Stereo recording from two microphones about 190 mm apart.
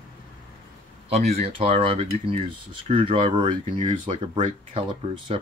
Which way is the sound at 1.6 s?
30° right (ahead or behind).